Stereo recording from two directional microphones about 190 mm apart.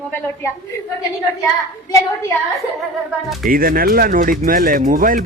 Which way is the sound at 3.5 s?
50° right (ahead or behind).